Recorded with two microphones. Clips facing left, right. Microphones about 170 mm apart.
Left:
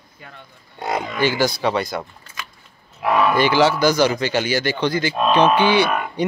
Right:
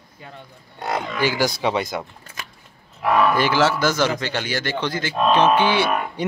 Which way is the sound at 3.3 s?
Centre (ahead or behind).